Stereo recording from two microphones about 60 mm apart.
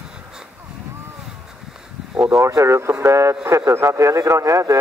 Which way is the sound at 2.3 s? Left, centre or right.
Right.